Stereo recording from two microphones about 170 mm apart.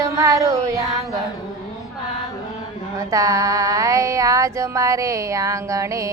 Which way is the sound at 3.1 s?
20° right (ahead or behind).